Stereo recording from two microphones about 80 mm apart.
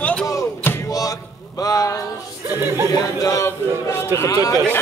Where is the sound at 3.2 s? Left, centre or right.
Left.